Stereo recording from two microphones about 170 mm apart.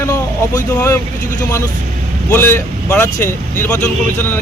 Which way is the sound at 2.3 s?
15° left (ahead or behind).